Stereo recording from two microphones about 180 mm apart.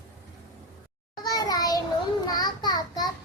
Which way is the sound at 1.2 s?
20° left (ahead or behind).